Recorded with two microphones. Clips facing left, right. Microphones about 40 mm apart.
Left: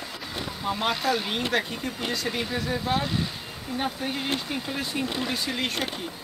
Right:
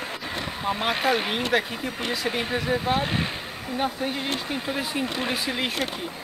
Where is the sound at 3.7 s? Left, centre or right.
Centre.